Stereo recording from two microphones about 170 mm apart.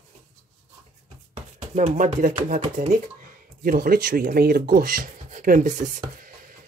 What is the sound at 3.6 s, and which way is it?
Speech, 60° right (ahead or behind).